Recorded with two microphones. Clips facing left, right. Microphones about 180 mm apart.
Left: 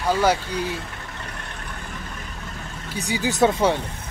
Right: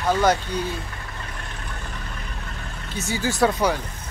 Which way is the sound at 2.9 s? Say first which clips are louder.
Left 1 dB; 15° left (ahead or behind).